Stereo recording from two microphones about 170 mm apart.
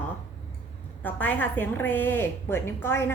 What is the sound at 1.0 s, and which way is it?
A woman's voice, 10° left (ahead or behind).